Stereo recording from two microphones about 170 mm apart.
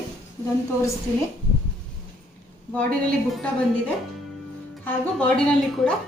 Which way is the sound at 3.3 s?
10° left (ahead or behind).